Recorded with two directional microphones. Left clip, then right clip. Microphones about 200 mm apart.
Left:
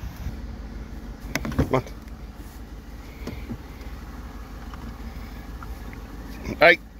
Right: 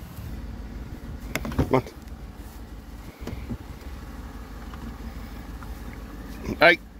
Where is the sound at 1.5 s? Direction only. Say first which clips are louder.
Right 1 dB; 20° right (ahead or behind).